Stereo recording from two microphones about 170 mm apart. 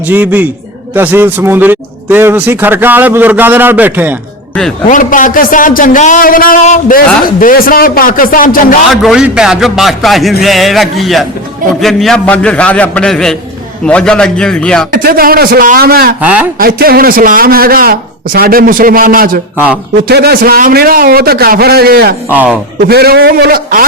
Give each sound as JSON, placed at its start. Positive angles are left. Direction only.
{"t": 0.1, "sound": "a man's voice", "side_deg": -10}
{"t": 4.9, "sound": "a man's voice", "side_deg": 50}
{"t": 8.9, "sound": "a man's voice", "side_deg": 0}
{"t": 14.9, "sound": "a man's voice", "side_deg": -60}
{"t": 16.2, "sound": "a man's voice", "side_deg": -10}
{"t": 16.6, "sound": "a man's voice", "side_deg": -60}
{"t": 19.5, "sound": "a man's voice", "side_deg": -10}
{"t": 20.1, "sound": "a man's voice", "side_deg": -70}
{"t": 22.3, "sound": "a man's voice", "side_deg": -10}
{"t": 22.8, "sound": "a man's voice", "side_deg": -65}